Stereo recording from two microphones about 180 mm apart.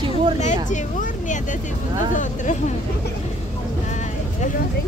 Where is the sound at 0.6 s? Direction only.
45° left (ahead or behind).